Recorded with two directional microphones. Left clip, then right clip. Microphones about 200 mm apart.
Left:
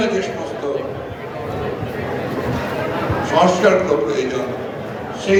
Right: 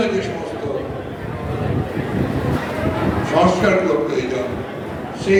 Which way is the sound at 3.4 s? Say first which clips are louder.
Left 2 dB; 30° left (ahead or behind).